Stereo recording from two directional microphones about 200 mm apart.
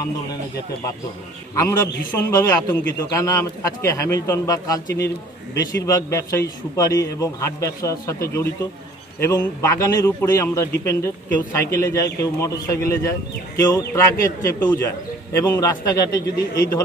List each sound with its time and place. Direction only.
1.5 s a man's voice: 15° left (ahead or behind)